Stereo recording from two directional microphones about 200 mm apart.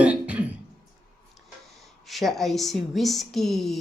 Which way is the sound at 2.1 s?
Centre (ahead or behind).